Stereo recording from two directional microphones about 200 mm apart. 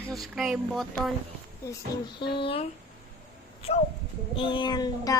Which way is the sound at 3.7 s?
30° left (ahead or behind).